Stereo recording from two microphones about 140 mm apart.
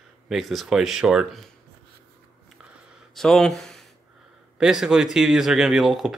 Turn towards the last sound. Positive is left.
turn(degrees=0)  # may be behind; listen again after turning